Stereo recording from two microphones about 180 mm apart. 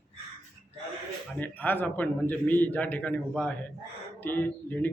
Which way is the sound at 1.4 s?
10° left (ahead or behind).